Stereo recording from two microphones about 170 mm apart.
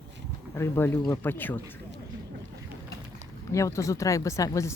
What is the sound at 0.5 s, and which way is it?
Speech, 15° left (ahead or behind).